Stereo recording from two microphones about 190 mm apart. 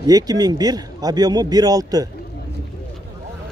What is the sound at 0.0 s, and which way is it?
Speech, 20° right (ahead or behind).